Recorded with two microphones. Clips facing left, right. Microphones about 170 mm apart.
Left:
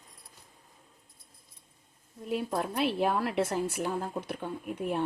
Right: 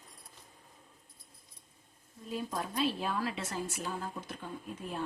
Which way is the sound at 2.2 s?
65° left (ahead or behind).